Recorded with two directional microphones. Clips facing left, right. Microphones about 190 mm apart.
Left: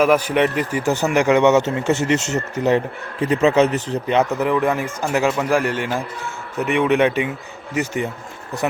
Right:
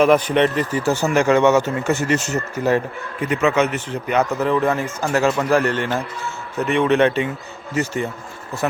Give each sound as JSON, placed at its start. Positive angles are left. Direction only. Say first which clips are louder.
{"t": 0.0, "sound": "speech", "louder": "right 1 dB", "side_deg": 10}
{"t": 3.2, "sound": "a man's voice", "louder": "left 3 dB", "side_deg": 30}
{"t": 4.1, "sound": "speech", "louder": "even", "side_deg": 20}